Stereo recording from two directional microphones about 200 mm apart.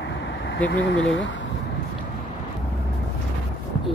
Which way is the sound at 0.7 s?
70° left (ahead or behind).